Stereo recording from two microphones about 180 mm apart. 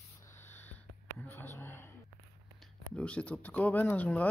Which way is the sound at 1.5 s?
15° left (ahead or behind).